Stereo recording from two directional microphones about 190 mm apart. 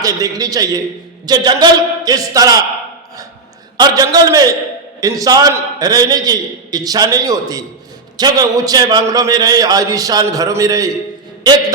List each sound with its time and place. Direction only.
0.0 s a man's voice: 20° right (ahead or behind)
3.8 s a man's voice: 20° right (ahead or behind)